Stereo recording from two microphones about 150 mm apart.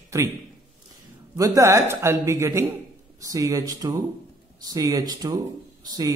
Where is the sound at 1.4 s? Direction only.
20° right (ahead or behind).